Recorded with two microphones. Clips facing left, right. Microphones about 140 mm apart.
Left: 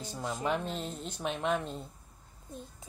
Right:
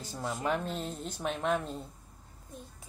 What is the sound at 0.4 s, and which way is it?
Speech, centre (ahead or behind).